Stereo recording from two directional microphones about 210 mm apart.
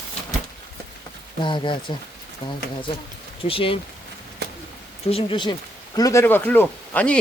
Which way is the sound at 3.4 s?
25° left (ahead or behind).